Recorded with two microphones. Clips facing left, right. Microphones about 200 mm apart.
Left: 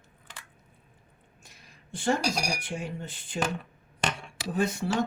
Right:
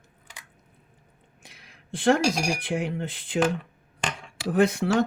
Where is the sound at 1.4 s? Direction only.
85° right.